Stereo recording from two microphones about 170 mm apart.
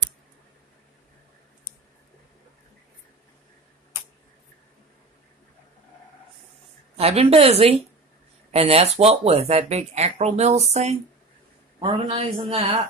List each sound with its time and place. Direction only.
7.0 s speech: 35° right (ahead or behind)